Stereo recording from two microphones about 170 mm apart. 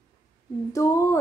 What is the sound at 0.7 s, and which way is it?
Speech, 20° left (ahead or behind).